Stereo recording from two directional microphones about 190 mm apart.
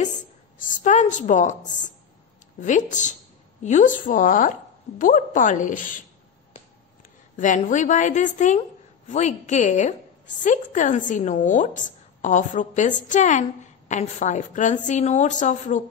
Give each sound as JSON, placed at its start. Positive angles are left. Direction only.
{"t": 0.6, "sound": "a woman's voice", "side_deg": 40}
{"t": 7.3, "sound": "a woman's voice", "side_deg": 40}